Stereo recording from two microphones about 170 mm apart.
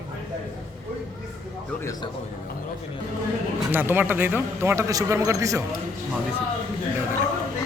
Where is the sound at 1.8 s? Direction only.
20° left (ahead or behind).